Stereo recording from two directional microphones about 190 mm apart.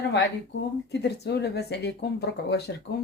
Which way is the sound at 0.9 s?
60° left (ahead or behind).